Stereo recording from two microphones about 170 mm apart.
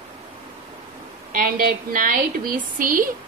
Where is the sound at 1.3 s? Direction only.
55° right (ahead or behind).